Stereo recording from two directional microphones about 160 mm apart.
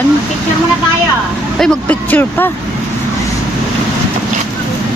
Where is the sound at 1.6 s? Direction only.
5° left (ahead or behind).